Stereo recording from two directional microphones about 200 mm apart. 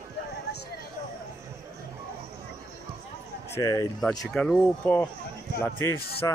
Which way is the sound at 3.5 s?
15° left (ahead or behind).